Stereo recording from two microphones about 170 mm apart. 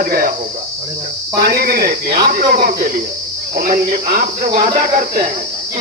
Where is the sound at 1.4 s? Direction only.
65° right (ahead or behind).